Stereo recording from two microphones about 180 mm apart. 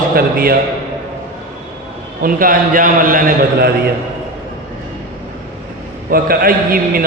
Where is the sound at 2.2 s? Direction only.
50° right (ahead or behind).